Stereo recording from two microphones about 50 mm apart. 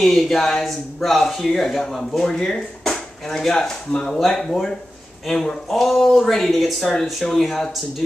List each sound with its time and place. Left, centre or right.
0.0 s speech: centre